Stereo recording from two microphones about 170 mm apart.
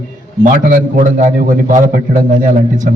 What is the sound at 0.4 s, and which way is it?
A man's voice, 55° right (ahead or behind).